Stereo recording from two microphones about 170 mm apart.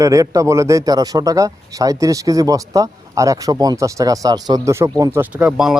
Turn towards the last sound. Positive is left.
turn(degrees=-5)  # may be behind; listen again after turning